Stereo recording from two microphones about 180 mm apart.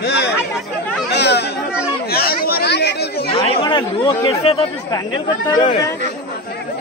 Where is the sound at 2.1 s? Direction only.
60° left (ahead or behind).